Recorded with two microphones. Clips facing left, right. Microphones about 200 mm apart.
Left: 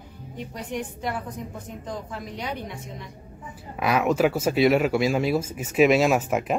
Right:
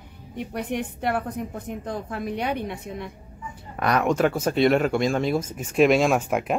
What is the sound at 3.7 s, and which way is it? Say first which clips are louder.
Speech: even; 5° left (ahead or behind).